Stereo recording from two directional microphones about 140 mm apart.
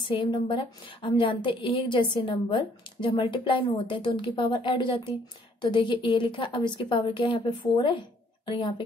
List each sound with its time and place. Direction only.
0.0 s a woman's voice: 35° left (ahead or behind)